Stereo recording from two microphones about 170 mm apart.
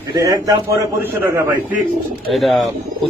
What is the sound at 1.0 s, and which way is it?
Speech, 15° right (ahead or behind).